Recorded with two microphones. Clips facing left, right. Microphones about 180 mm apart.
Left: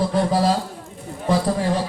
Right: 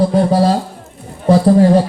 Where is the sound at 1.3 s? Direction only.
40° right (ahead or behind).